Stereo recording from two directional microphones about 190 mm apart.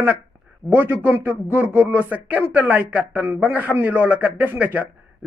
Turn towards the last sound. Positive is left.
turn(degrees=-10)  # may be behind; listen again after turning